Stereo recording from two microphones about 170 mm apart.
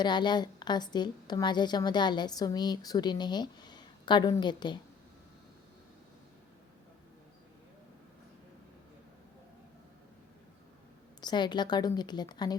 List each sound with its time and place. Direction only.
0.0 s a woman's voice: 25° left (ahead or behind)
11.2 s a woman's voice: 25° left (ahead or behind)